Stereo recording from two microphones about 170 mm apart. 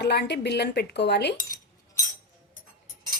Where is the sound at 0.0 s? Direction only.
75° left (ahead or behind).